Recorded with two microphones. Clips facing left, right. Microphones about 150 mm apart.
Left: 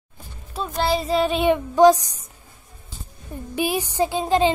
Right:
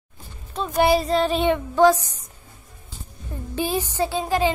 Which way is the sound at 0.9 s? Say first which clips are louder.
Right 1 dB; centre (ahead or behind).